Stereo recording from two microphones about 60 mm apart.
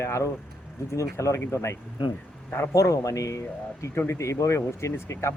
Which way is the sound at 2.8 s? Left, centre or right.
Left.